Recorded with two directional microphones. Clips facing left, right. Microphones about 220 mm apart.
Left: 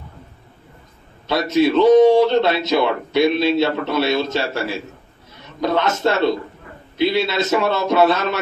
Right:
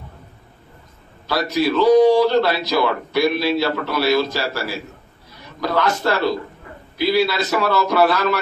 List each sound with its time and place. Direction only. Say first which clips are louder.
1.2 s a man's voice: left 3 dB; 25° left (ahead or behind)